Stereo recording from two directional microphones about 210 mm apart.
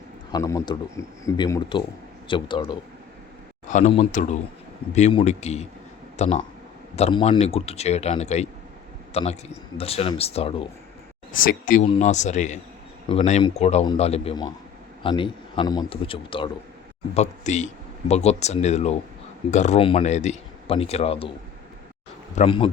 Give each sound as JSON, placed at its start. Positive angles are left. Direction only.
{"t": 0.3, "sound": "a man's voice", "side_deg": 15}
{"t": 3.7, "sound": "speech", "side_deg": 35}
{"t": 11.4, "sound": "speech", "side_deg": 40}
{"t": 22.4, "sound": "speech", "side_deg": 25}